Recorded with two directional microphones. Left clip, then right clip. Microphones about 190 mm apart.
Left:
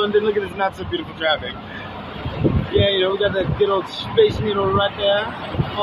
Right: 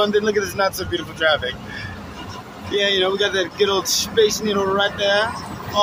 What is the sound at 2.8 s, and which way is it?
Speech, 20° right (ahead or behind).